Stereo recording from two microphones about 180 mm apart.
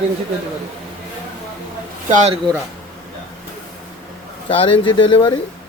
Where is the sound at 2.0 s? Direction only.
40° right (ahead or behind).